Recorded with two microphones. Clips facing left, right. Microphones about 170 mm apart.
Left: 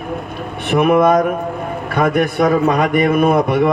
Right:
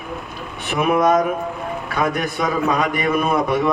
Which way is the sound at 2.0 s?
55° left (ahead or behind).